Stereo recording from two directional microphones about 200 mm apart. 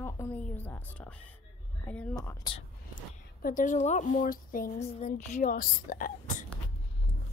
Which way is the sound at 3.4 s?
40° left (ahead or behind).